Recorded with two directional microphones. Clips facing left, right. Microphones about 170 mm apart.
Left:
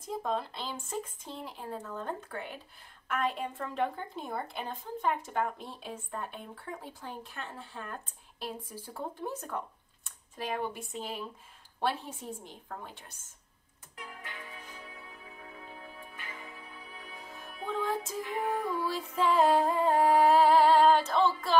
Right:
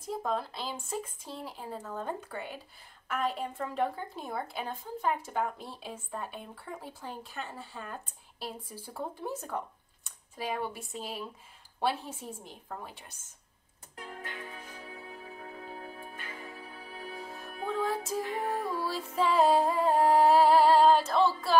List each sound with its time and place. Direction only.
0.1 s a woman's voice: 5° right (ahead or behind)
13.9 s music: 35° right (ahead or behind)
19.2 s a woman's voice: 5° right (ahead or behind)